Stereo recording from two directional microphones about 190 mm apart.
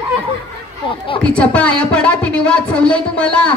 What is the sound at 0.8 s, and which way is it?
Speech, 25° left (ahead or behind).